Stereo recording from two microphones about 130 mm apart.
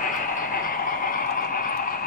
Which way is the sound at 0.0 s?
90° left.